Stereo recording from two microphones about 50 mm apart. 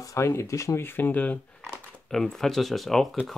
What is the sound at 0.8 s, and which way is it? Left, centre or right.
Speech, left.